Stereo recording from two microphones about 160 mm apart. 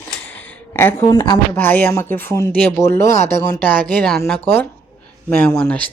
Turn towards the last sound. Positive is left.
turn(degrees=5)  # may be behind; listen again after turning